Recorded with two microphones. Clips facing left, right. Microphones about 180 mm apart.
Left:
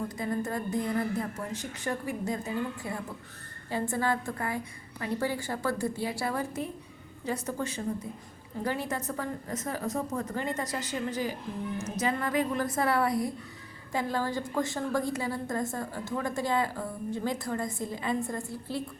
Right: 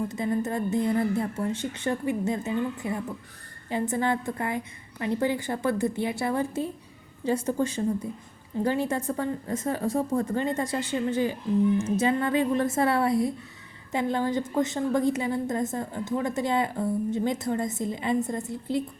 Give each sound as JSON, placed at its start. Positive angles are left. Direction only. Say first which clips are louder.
{"t": 0.1, "sound": "a woman's voice", "louder": "right 4 dB", "side_deg": -25}